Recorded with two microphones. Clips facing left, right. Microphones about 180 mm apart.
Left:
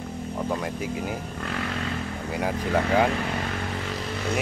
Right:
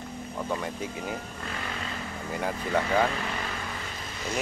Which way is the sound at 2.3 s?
5° left (ahead or behind).